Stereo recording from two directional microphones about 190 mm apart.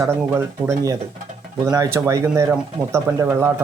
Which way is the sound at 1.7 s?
15° right (ahead or behind).